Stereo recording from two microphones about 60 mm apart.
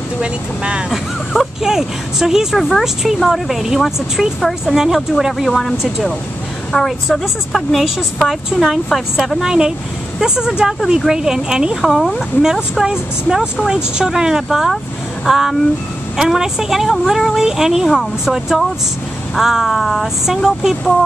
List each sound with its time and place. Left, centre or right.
0.2 s speech: centre
0.9 s a woman's voice: centre
4.4 s a woman's voice: centre
5.5 s a woman's voice: centre
11.8 s a woman's voice: centre
12.4 s a woman's voice: centre